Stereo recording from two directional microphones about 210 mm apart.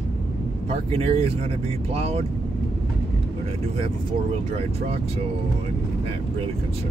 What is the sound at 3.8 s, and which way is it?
Speech, 25° right (ahead or behind).